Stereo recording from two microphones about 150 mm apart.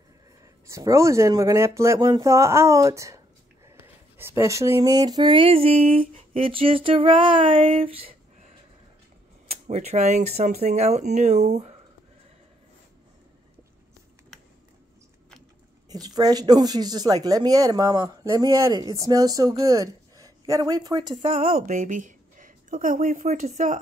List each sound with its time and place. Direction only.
0.7 s speech: 20° right (ahead or behind)
4.2 s a sound: 15° right (ahead or behind); by 8.1 s 40° right (ahead or behind)
9.5 s speech: 45° right (ahead or behind)
15.9 s speech: 25° right (ahead or behind)
21.2 s a sound: 40° right (ahead or behind)
21.5 s a woman's voice: 65° right (ahead or behind)